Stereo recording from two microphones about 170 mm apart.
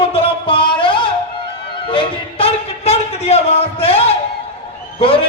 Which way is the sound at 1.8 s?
30° left (ahead or behind).